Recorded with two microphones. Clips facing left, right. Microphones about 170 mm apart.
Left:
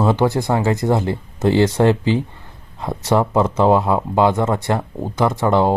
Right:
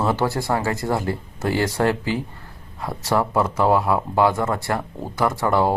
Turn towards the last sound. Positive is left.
turn(degrees=20)  # may be behind; listen again after turning